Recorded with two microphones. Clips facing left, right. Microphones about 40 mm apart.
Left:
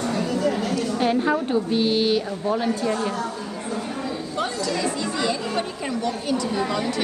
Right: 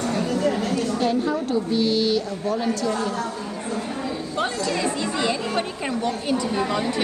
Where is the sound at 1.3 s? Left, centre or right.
Left.